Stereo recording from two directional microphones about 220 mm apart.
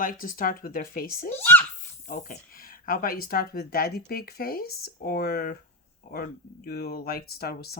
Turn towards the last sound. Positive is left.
turn(degrees=45)  # may be behind; listen again after turning